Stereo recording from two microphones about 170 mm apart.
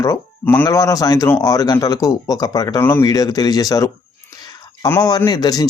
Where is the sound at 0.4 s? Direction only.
10° left (ahead or behind).